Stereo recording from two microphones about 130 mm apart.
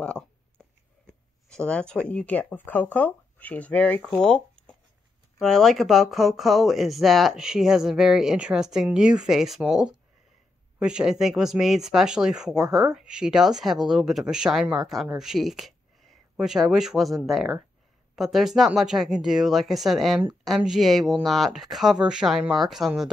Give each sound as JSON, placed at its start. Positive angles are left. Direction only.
{"t": 1.5, "sound": "speech", "side_deg": 5}
{"t": 12.6, "sound": "speech", "side_deg": -25}
{"t": 12.9, "sound": "speech", "side_deg": -5}